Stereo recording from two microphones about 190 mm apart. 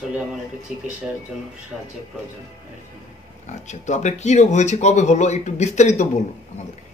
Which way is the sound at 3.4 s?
40° left (ahead or behind).